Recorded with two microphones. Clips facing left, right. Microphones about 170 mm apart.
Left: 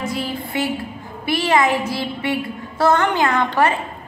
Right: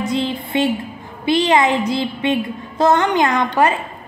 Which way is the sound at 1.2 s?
20° right (ahead or behind).